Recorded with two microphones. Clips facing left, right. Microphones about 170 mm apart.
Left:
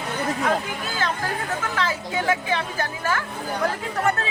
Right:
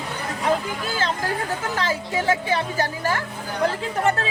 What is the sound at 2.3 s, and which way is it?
Speech, 35° right (ahead or behind).